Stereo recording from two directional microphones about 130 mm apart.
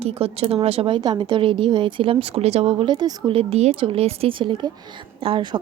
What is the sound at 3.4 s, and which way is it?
A woman's voice, 50° right (ahead or behind).